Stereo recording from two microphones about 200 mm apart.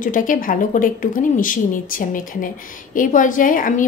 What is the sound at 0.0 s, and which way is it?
A woman's voice, 40° left (ahead or behind).